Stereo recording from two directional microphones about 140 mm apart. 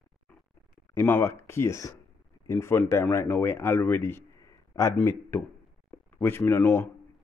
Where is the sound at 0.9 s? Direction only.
15° left (ahead or behind).